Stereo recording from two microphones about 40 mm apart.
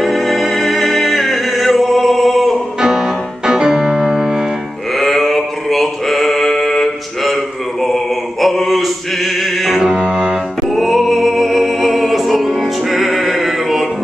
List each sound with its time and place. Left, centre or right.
0.0 s music: centre
2.8 s music: centre
4.9 s male singing: centre
7.8 s mantra: centre
9.8 s music: centre
10.7 s music: centre